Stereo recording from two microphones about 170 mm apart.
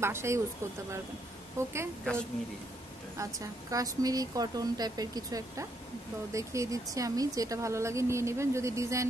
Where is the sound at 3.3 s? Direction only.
20° right (ahead or behind).